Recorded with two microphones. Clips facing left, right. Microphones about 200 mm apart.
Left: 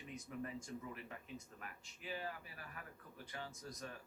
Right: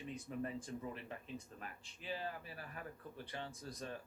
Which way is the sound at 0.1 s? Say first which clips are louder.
Right 3 dB; 30° right (ahead or behind).